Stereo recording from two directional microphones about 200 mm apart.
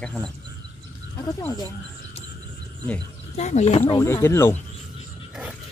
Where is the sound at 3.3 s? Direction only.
35° left (ahead or behind).